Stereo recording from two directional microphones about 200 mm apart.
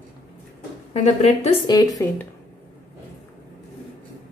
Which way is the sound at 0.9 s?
30° left (ahead or behind).